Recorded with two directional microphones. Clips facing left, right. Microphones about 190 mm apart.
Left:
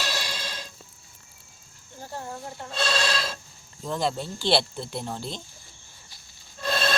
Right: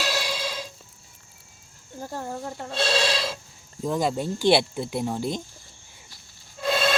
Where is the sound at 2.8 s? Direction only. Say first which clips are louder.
Right 3 dB; 10° right (ahead or behind).